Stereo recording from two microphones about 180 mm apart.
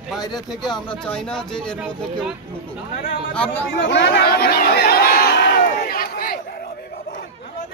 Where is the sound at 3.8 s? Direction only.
75° left (ahead or behind); by 6.4 s 55° left (ahead or behind).